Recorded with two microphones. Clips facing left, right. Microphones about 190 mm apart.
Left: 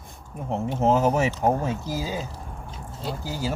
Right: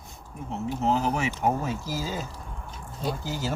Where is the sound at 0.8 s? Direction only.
50° left (ahead or behind).